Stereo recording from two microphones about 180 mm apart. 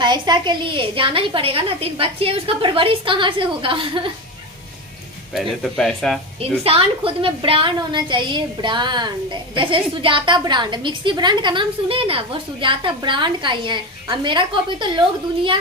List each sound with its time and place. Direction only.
0.0 s a woman's voice: 25° right (ahead or behind)
5.3 s speech: centre (ahead or behind)
6.4 s a woman's voice: 30° right (ahead or behind)